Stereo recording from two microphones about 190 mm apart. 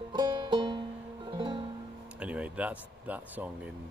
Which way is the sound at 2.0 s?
5° right (ahead or behind).